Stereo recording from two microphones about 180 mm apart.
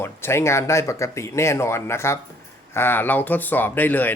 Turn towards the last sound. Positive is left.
turn(degrees=10)  # may be behind; listen again after turning